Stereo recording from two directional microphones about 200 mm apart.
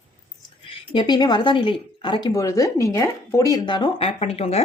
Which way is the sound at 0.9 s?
20° left (ahead or behind).